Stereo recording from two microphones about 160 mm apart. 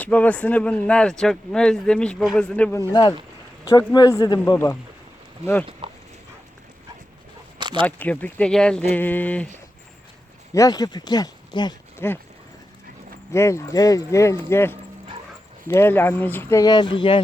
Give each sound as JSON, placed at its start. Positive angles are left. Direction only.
{"t": 0.0, "sound": "speech", "side_deg": 10}
{"t": 2.7, "sound": "speech", "side_deg": 25}
{"t": 5.8, "sound": "dog", "side_deg": -35}
{"t": 7.6, "sound": "a sound", "side_deg": -30}
{"t": 7.9, "sound": "speech", "side_deg": 10}
{"t": 10.5, "sound": "speech", "side_deg": 20}
{"t": 11.9, "sound": "speech", "side_deg": 15}
{"t": 13.3, "sound": "speech", "side_deg": 20}